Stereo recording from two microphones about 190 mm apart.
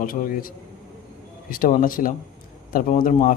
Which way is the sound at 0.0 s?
45° left (ahead or behind).